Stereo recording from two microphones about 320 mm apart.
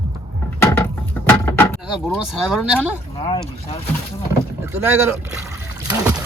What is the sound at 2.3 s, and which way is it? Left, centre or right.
Speech, centre.